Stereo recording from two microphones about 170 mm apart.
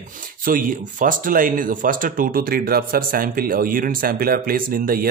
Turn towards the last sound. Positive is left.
turn(degrees=-55)  # may be behind; listen again after turning